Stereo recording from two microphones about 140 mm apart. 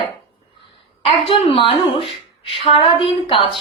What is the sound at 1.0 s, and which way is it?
A woman's voice, 40° left (ahead or behind).